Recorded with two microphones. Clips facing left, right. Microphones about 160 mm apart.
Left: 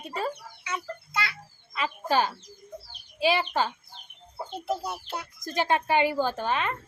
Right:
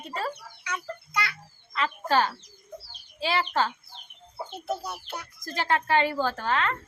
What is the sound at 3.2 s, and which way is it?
Speech, 15° left (ahead or behind).